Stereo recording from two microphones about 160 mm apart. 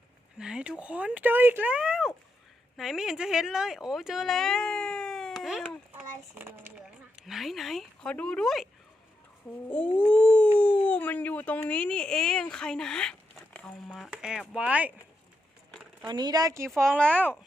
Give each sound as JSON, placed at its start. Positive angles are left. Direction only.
{"t": 0.3, "sound": "speech", "side_deg": -5}
{"t": 5.9, "sound": "a child's voice", "side_deg": -10}
{"t": 7.2, "sound": "speech", "side_deg": 0}
{"t": 9.6, "sound": "a sound", "side_deg": 10}
{"t": 10.6, "sound": "speech", "side_deg": 10}
{"t": 13.9, "sound": "speech", "side_deg": -5}
{"t": 16.0, "sound": "speech", "side_deg": -25}
{"t": 17.0, "sound": "a sound", "side_deg": 10}